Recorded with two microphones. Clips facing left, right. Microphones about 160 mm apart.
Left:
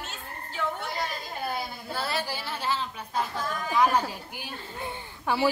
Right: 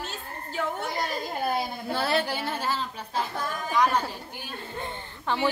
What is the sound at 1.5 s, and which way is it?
A woman's voice, 55° right (ahead or behind).